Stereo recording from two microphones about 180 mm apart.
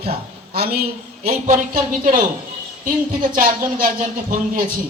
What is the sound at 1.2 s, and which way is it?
Speech, 40° right (ahead or behind).